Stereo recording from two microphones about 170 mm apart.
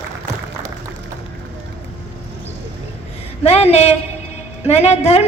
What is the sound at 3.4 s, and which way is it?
A woman's voice, 40° left (ahead or behind).